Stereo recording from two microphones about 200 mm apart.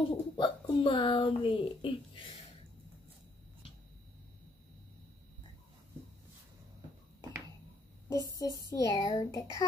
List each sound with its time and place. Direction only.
0.0 s a child's voice: 25° left (ahead or behind)
8.1 s speech: 15° left (ahead or behind)